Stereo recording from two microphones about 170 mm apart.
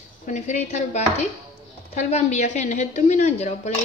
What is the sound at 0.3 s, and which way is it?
Speech, 45° left (ahead or behind).